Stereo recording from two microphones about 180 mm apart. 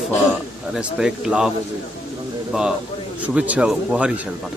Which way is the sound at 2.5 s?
5° right (ahead or behind).